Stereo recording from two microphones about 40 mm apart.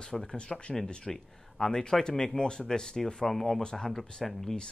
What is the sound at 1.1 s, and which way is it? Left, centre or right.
Speech, centre.